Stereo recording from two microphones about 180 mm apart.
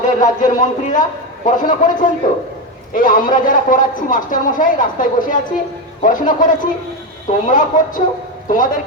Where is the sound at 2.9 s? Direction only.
50° left (ahead or behind).